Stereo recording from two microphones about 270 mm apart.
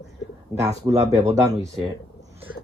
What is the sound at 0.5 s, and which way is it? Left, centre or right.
Speech, centre.